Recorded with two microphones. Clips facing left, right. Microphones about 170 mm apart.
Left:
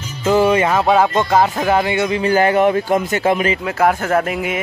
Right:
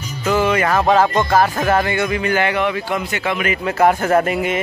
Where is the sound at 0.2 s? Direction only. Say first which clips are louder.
Left 3 dB; 25° left (ahead or behind).